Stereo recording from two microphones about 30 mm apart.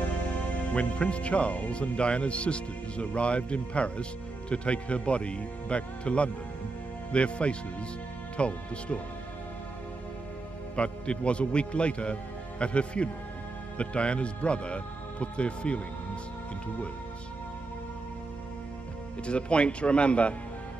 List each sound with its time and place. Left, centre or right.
0.7 s speech: left
10.8 s speech: left
19.2 s speech: left